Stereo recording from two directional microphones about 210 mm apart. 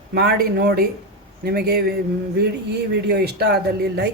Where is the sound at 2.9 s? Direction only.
50° right (ahead or behind).